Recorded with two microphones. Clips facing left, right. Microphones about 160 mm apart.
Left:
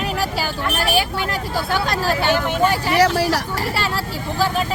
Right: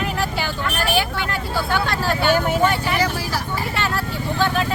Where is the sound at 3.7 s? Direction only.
35° left (ahead or behind).